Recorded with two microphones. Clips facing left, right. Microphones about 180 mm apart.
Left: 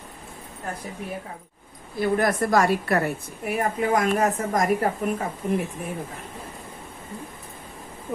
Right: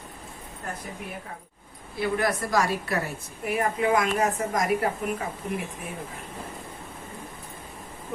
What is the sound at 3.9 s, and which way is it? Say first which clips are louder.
Speech: left 2 dB; 45° left (ahead or behind).